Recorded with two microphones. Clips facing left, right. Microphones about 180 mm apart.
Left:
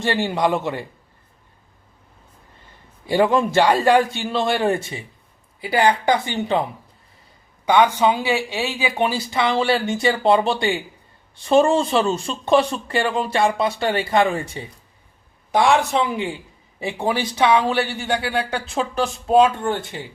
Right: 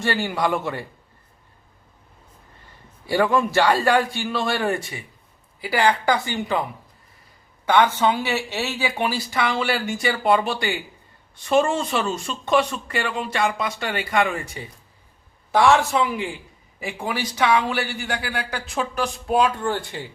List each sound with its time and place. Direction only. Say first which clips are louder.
0.0 s speech: left 3 dB; 20° left (ahead or behind)
3.1 s speech: left 2 dB; 20° left (ahead or behind)
7.6 s speech: left 2 dB; 15° left (ahead or behind); by 14.6 s 30° left (ahead or behind)
15.5 s speech: even; 15° left (ahead or behind)